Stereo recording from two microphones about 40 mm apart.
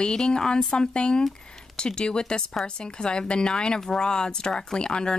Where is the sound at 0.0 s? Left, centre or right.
Centre.